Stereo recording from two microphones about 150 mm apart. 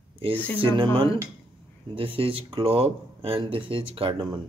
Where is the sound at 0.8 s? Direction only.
35° right (ahead or behind).